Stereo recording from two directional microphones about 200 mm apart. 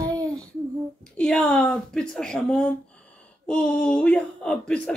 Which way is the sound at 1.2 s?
5° left (ahead or behind).